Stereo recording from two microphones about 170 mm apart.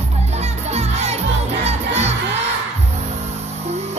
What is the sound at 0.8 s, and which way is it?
Crowd, 40° right (ahead or behind).